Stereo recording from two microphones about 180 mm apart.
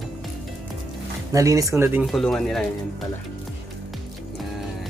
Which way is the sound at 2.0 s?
Centre (ahead or behind).